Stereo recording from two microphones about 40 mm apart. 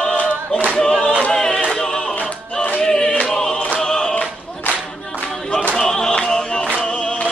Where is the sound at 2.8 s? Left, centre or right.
Centre.